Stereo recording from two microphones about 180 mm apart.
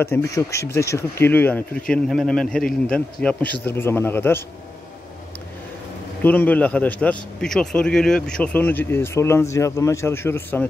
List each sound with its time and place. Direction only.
0.0 s a man's voice: 15° left (ahead or behind)
6.2 s a man's voice: 10° left (ahead or behind)